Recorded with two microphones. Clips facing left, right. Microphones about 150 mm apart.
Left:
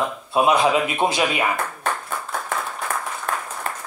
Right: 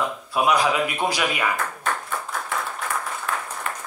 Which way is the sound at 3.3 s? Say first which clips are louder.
Left 3 dB; 40° left (ahead or behind).